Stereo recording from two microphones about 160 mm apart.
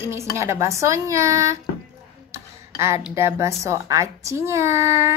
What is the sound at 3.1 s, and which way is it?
A woman's voice, 15° right (ahead or behind).